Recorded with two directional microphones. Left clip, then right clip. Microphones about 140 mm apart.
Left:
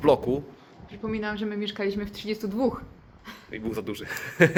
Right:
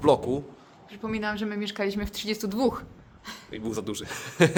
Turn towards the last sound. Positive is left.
turn(degrees=-10)  # may be behind; listen again after turning